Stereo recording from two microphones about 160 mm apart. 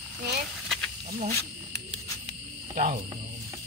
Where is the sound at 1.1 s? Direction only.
75° right (ahead or behind).